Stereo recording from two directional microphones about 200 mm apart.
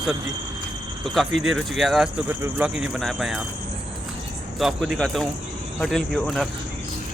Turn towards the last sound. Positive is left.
turn(degrees=0)  # may be behind; listen again after turning